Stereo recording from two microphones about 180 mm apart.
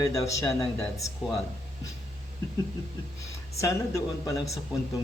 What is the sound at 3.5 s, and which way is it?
Speech, 20° left (ahead or behind).